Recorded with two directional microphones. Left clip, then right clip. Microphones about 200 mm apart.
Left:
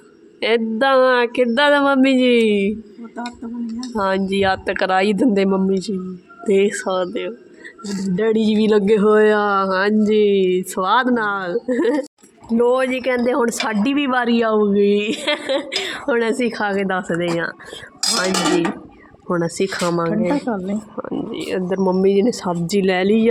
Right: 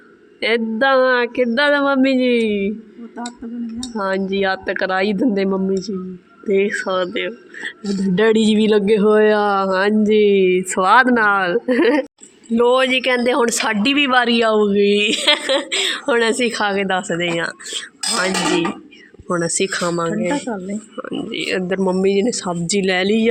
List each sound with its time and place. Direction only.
0.3 s speech: centre (ahead or behind)
3.9 s speech: 5° left (ahead or behind)
8.1 s speech: 10° right (ahead or behind)
12.5 s speech: 5° left (ahead or behind)
20.3 s speech: 30° left (ahead or behind)
20.9 s speech: 10° left (ahead or behind)